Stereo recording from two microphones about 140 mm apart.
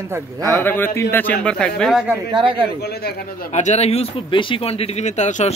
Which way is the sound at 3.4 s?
55° left (ahead or behind).